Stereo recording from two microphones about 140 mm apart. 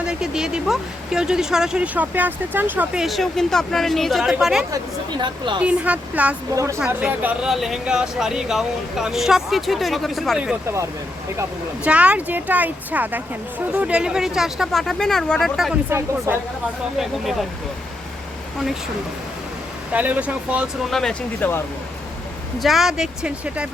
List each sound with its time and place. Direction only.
0.0 s speech: 5° right (ahead or behind)
4.7 s speech: 35° right (ahead or behind)
5.6 s speech: 10° right (ahead or behind)
6.5 s speech: 20° right (ahead or behind)
6.8 s speech: 10° right (ahead or behind)
11.8 s speech: 10° right (ahead or behind)
15.9 s speech: 20° right (ahead or behind)
17.0 s speech: centre (ahead or behind)
19.9 s speech: 10° right (ahead or behind)
20.9 s speech: 5° left (ahead or behind)
22.6 s speech: centre (ahead or behind)